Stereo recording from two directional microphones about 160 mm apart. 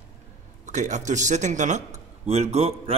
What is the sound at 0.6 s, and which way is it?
A man's voice, 50° right (ahead or behind).